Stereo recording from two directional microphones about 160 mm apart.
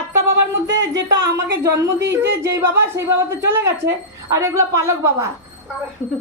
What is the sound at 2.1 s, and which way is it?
Speech, 20° right (ahead or behind).